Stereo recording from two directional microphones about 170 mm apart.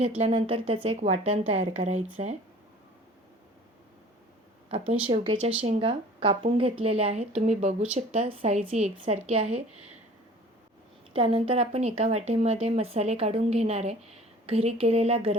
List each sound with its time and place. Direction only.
0.2 s speech: 35° right (ahead or behind)
5.0 s speech: 30° right (ahead or behind)
11.1 s speech: 35° right (ahead or behind)